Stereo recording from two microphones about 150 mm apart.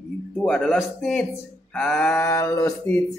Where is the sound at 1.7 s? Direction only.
5° left (ahead or behind).